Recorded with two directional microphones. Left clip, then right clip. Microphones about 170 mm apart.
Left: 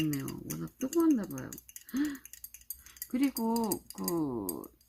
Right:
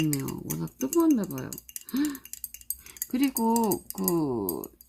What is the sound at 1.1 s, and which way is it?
Speech, 30° right (ahead or behind).